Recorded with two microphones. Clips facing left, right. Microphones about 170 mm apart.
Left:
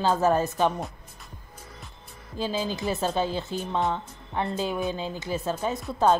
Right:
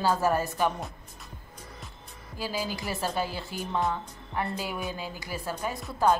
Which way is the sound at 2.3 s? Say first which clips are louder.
Left 4 dB; 20° left (ahead or behind).